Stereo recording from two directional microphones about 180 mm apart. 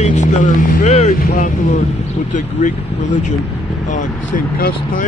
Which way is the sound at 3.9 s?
45° left (ahead or behind).